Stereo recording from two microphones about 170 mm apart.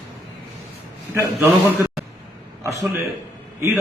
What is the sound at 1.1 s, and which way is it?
Speech, 15° right (ahead or behind).